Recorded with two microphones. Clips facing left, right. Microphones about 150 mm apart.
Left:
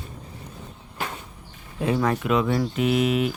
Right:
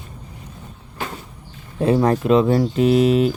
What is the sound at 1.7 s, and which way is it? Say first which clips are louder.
Speech: right 6 dB; 35° right (ahead or behind).